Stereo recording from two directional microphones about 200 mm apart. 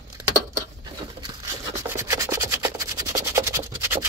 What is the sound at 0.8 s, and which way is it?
Rub, 20° right (ahead or behind).